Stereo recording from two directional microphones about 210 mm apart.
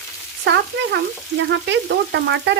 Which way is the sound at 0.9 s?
55° right (ahead or behind).